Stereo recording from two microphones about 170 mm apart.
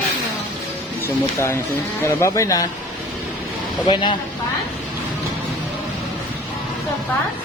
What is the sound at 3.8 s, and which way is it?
Speech, 25° left (ahead or behind).